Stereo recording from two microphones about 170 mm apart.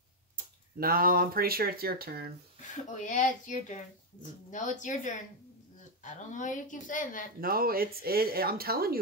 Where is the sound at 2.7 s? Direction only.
45° left (ahead or behind).